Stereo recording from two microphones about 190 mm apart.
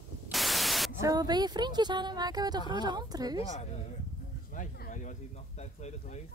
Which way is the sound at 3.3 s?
35° left (ahead or behind).